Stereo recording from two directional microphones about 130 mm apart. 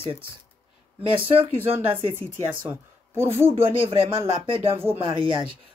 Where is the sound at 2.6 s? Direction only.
15° right (ahead or behind).